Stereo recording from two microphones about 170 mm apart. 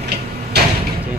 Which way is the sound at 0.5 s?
75° right (ahead or behind).